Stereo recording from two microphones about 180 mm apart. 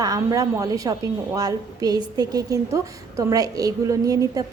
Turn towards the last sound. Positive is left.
turn(degrees=-20)  # may be behind; listen again after turning